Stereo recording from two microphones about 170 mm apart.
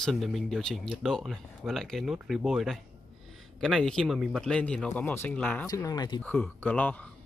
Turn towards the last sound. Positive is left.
turn(degrees=10)  # may be behind; listen again after turning